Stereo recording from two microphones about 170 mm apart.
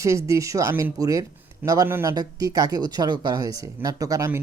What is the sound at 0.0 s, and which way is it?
Speech, 20° right (ahead or behind).